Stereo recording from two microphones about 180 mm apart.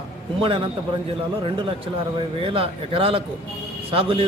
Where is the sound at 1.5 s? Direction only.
30° right (ahead or behind).